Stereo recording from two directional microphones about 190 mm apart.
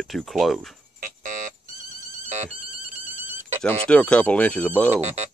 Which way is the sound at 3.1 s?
10° right (ahead or behind).